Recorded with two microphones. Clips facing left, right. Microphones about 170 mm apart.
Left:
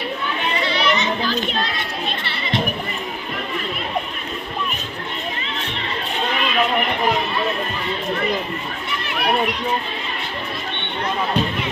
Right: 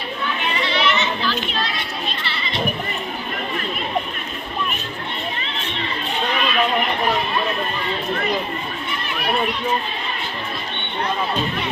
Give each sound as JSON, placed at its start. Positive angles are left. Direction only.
{"t": 0.7, "sound": "children playing", "side_deg": 40}
{"t": 2.2, "sound": "crowd", "side_deg": 55}